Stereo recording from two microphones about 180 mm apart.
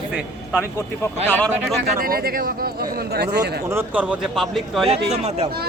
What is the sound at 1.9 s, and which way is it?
Speech, 55° right (ahead or behind).